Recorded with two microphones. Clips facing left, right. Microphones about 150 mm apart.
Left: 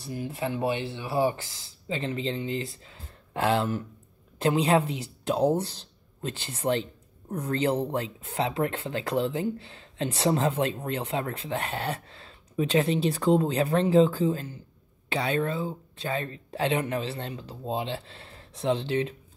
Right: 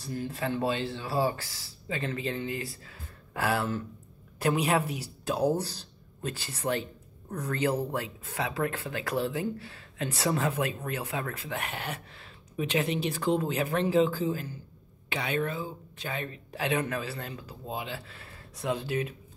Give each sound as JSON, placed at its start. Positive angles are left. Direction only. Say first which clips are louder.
{"t": 0.0, "sound": "speech", "louder": "left 1 dB", "side_deg": 15}